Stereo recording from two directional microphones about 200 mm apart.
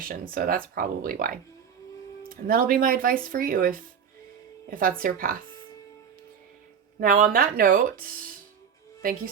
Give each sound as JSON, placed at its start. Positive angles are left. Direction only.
{"t": 0.0, "sound": "speech", "side_deg": -45}
{"t": 7.0, "sound": "speech", "side_deg": -45}